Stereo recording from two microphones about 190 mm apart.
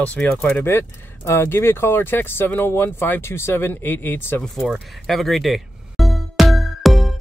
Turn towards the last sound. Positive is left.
turn(degrees=0)  # may be behind; listen again after turning